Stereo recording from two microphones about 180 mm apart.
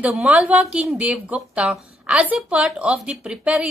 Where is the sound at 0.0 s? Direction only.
5° right (ahead or behind).